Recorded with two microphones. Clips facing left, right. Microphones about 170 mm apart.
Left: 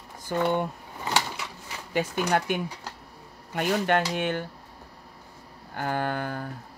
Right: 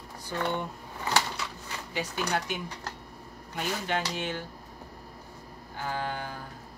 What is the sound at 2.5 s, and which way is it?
Speech, 55° left (ahead or behind).